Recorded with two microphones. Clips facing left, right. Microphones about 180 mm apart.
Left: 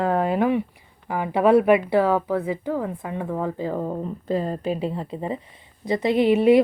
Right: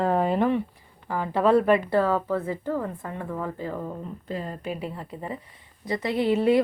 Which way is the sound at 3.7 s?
40° left (ahead or behind).